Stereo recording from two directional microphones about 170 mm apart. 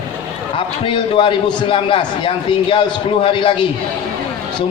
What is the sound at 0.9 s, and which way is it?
A man's voice, 30° left (ahead or behind).